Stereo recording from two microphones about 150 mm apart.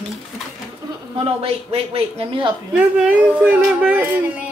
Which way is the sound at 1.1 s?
40° right (ahead or behind).